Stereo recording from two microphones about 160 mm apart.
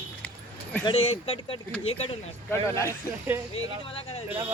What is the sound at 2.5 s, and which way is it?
Speech, 15° left (ahead or behind).